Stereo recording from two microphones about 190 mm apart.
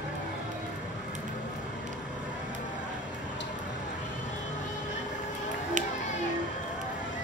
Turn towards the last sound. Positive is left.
turn(degrees=-40)  # may be behind; listen again after turning